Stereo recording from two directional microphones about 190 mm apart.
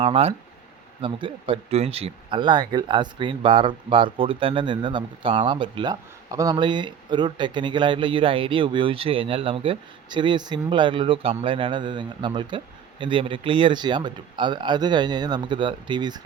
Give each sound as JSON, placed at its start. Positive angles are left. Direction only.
{"t": 0.0, "sound": "speech", "side_deg": -30}